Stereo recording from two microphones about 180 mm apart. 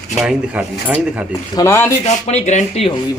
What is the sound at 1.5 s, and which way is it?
Speech, 15° left (ahead or behind).